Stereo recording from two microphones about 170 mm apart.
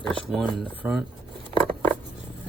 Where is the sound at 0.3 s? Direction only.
Centre (ahead or behind).